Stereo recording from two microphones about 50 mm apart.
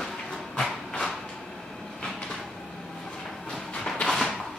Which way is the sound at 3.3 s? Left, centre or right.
Centre.